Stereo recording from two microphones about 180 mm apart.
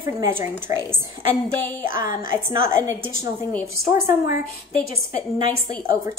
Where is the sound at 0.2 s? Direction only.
15° right (ahead or behind).